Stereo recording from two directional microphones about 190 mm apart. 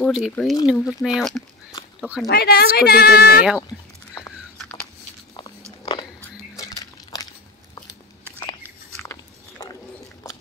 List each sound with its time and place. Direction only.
0.0 s speech: centre (ahead or behind)
2.2 s a woman's voice: 55° left (ahead or behind)
4.6 s biting: 5° left (ahead or behind)
6.5 s a sound: 15° left (ahead or behind)
9.0 s biting: 15° left (ahead or behind)